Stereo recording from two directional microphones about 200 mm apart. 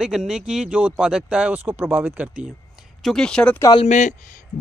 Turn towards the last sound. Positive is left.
turn(degrees=40)  # may be behind; listen again after turning